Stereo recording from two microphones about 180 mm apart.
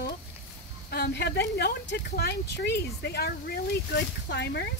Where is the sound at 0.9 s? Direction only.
60° left (ahead or behind).